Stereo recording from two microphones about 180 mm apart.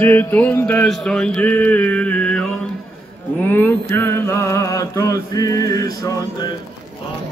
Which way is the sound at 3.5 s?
10° left (ahead or behind).